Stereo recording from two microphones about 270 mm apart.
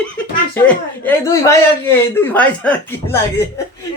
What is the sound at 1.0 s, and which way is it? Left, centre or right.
A man's voice, centre.